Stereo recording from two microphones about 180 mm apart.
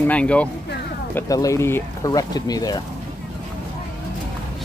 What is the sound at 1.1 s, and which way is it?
Speech, 20° left (ahead or behind).